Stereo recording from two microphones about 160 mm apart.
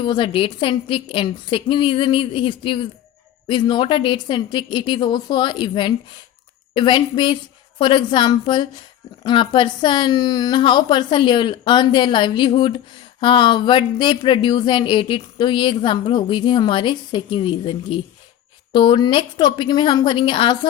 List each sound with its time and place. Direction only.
0.0 s a woman's voice: 30° left (ahead or behind)